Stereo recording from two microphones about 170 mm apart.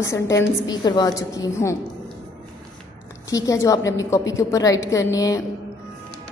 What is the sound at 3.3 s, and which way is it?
A woman's voice, 20° left (ahead or behind).